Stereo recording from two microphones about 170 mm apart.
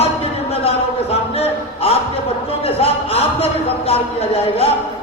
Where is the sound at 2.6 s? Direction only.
35° left (ahead or behind).